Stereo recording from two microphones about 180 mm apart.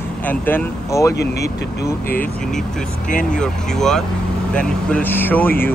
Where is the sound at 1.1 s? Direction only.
65° left (ahead or behind).